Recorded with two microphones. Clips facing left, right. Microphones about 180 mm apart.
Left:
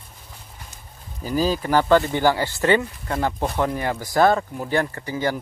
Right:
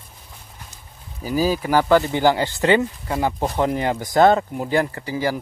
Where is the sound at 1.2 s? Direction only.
10° right (ahead or behind).